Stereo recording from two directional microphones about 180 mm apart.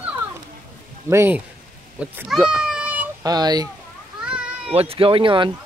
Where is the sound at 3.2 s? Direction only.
20° right (ahead or behind).